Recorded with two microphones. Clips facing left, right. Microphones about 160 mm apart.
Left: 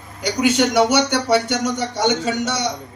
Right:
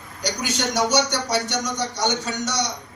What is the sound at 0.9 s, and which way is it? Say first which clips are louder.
A man's voice: left 5 dB; 60° left (ahead or behind).